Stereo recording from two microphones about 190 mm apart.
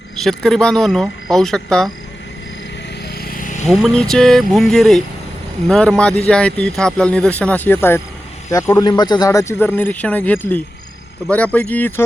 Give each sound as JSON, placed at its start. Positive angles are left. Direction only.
{"t": 0.2, "sound": "speech", "side_deg": 0}
{"t": 3.2, "sound": "a sound", "side_deg": 50}
{"t": 3.8, "sound": "speech", "side_deg": 0}